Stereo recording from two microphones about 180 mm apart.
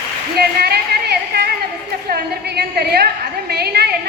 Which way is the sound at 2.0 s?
60° right (ahead or behind).